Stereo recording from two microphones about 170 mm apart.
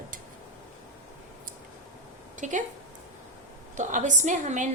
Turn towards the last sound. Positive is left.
turn(degrees=-45)  # may be behind; listen again after turning